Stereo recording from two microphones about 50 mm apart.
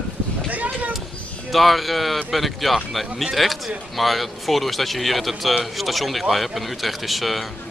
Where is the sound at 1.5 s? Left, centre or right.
Centre.